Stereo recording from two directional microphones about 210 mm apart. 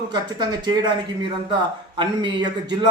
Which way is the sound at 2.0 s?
20° right (ahead or behind).